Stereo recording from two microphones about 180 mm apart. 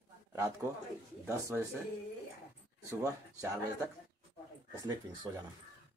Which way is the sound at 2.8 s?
15° right (ahead or behind).